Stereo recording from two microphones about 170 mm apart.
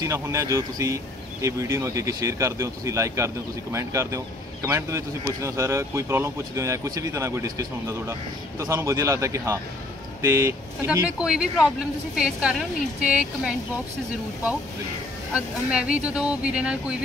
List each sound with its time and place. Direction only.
0.0 s speech: 20° right (ahead or behind)
11.1 s a woman's voice: 5° right (ahead or behind)
15.3 s speech: 5° right (ahead or behind)